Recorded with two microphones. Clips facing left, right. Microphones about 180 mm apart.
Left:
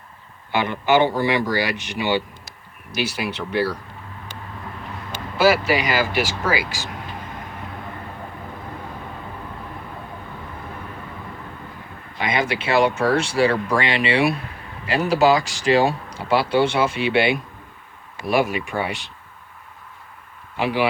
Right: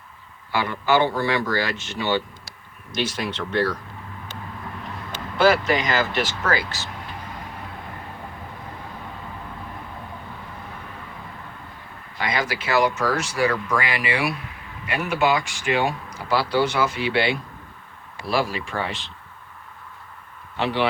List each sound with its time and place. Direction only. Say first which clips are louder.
0.5 s speech: left 2 dB; 20° left (ahead or behind)
5.4 s speech: left 1 dB; 10° left (ahead or behind)
12.2 s speech: left 3 dB; 25° left (ahead or behind)
20.6 s speech: left 2 dB; 10° left (ahead or behind)